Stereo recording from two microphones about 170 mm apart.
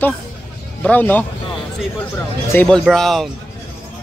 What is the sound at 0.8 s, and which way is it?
Speech, 10° left (ahead or behind).